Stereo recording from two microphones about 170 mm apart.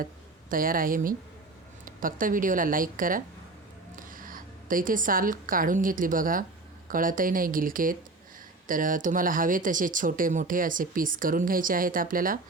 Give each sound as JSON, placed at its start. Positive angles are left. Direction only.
{"t": 0.5, "sound": "a woman's voice", "side_deg": -55}